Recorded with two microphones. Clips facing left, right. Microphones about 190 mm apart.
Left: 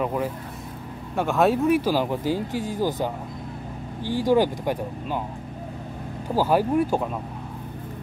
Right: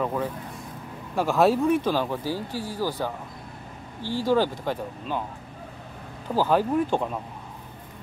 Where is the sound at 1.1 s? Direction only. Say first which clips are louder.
Even; centre (ahead or behind).